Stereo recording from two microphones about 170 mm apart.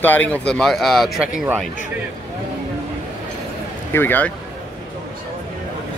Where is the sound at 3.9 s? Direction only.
10° left (ahead or behind).